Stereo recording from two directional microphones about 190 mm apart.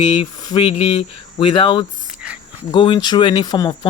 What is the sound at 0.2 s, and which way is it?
Speech, 20° left (ahead or behind).